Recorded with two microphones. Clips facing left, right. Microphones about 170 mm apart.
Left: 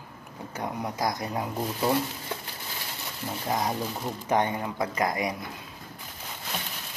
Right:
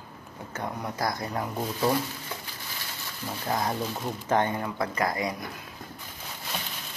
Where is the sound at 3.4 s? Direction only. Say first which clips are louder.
Even; 15° left (ahead or behind).